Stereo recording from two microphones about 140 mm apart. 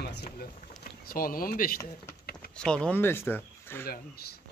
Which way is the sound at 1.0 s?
90° left.